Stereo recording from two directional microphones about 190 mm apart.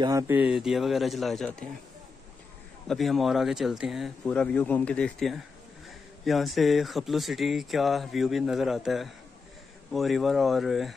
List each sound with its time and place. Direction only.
0.0 s speech: 20° right (ahead or behind)
0.4 s speech: 5° right (ahead or behind)
2.9 s speech: centre (ahead or behind)